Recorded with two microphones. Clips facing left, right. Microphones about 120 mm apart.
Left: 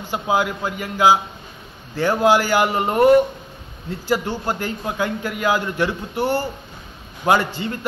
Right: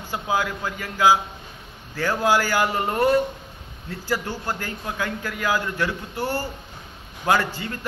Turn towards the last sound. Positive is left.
turn(degrees=25)  # may be behind; listen again after turning